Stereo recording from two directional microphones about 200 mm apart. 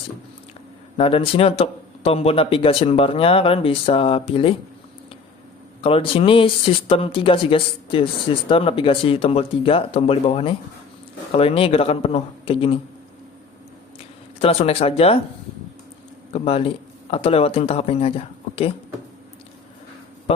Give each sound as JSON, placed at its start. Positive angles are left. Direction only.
{"t": 0.9, "sound": "a man's voice", "side_deg": 30}
{"t": 5.8, "sound": "a man's voice", "side_deg": 30}
{"t": 14.0, "sound": "speech", "side_deg": 30}
{"t": 16.3, "sound": "speech", "side_deg": 30}